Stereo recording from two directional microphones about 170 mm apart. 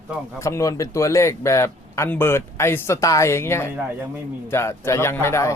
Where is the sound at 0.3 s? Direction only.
15° left (ahead or behind).